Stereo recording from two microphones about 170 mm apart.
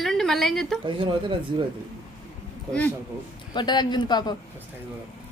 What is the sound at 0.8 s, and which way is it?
Speech, 30° right (ahead or behind).